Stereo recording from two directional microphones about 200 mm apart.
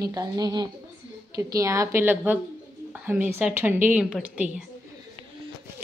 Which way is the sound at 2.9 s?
10° right (ahead or behind).